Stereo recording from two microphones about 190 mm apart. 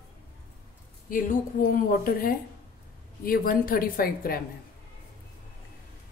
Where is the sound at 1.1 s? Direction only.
45° left (ahead or behind).